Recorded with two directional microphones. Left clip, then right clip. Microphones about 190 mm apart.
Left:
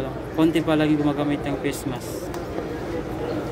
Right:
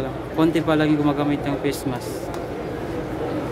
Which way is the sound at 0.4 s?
15° right (ahead or behind).